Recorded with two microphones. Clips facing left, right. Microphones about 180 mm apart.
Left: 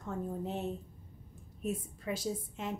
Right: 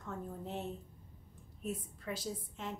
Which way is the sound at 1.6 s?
15° left (ahead or behind).